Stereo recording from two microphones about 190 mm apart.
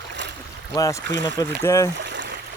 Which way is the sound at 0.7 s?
20° left (ahead or behind).